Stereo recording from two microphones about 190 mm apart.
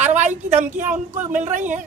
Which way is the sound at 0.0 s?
40° right (ahead or behind).